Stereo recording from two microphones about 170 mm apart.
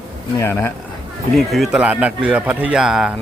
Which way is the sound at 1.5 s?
Centre (ahead or behind).